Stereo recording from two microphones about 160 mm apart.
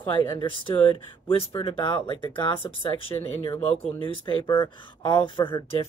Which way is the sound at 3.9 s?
35° left (ahead or behind).